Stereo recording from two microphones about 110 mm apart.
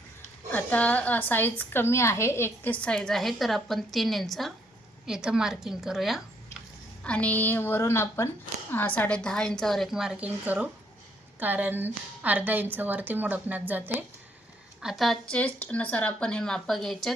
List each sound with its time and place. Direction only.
0.5 s a woman's voice: 15° left (ahead or behind); by 6.2 s centre (ahead or behind)
7.0 s a woman's voice: 10° left (ahead or behind); by 14.0 s 15° right (ahead or behind)
14.8 s a woman's voice: 5° right (ahead or behind)
15.4 s a woman's voice: 15° left (ahead or behind)